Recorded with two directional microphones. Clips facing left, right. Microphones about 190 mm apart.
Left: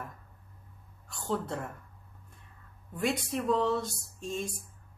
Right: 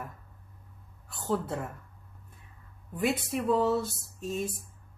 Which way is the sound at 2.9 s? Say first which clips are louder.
Right 2 dB; 5° right (ahead or behind).